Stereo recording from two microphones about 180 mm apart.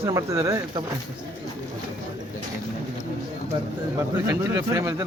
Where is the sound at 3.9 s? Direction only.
15° right (ahead or behind).